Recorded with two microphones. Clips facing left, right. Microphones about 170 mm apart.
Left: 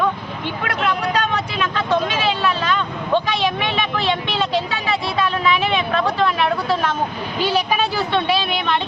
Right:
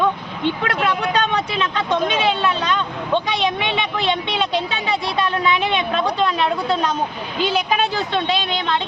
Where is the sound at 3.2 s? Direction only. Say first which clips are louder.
Even; 20° right (ahead or behind).